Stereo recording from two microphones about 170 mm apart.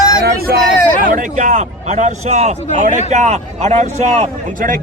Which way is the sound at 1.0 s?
50° right (ahead or behind).